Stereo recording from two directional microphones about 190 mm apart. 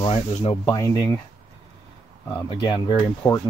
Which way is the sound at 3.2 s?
10° left (ahead or behind).